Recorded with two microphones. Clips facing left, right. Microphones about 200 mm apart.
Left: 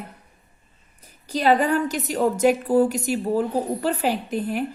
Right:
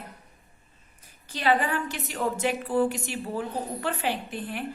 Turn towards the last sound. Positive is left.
turn(degrees=40)  # may be behind; listen again after turning